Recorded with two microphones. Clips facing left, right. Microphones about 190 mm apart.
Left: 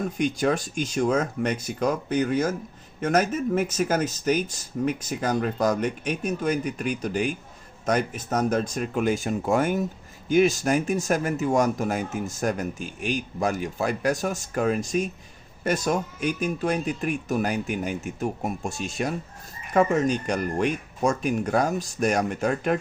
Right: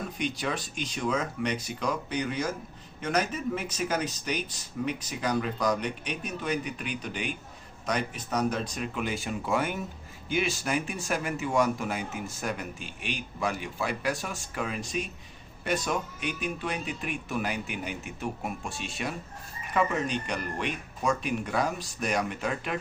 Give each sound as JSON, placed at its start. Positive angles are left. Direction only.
{"t": 0.2, "sound": "speech", "side_deg": 45}